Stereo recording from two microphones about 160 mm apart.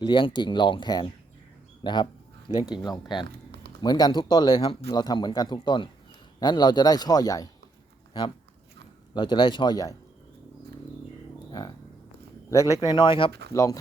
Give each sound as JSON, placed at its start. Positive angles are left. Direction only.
{"t": 0.0, "sound": "a man's voice", "side_deg": 30}
{"t": 3.2, "sound": "a sound", "side_deg": -90}
{"t": 3.8, "sound": "a man's voice", "side_deg": 25}
{"t": 9.1, "sound": "a man's voice", "side_deg": 30}
{"t": 12.5, "sound": "a man's voice", "side_deg": 20}
{"t": 13.5, "sound": "a man's voice", "side_deg": 20}